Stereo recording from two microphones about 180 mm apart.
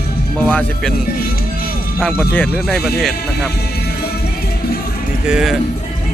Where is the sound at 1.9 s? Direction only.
5° left (ahead or behind).